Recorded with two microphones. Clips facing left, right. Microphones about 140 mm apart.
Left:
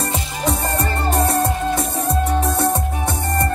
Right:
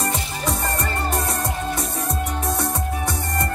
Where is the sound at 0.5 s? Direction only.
30° left (ahead or behind).